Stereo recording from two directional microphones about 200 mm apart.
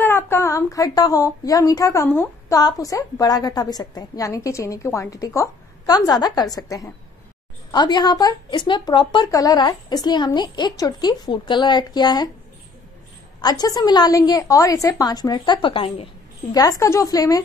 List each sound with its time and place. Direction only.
0.0 s speech: 10° left (ahead or behind)
13.4 s speech: 20° left (ahead or behind)